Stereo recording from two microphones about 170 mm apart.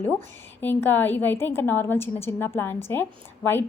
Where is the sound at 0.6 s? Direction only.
10° left (ahead or behind).